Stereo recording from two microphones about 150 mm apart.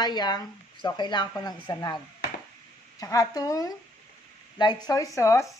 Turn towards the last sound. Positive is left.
turn(degrees=20)  # may be behind; listen again after turning